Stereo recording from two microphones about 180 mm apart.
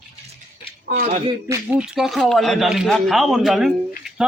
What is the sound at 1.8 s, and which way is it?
A man's voice, 5° right (ahead or behind).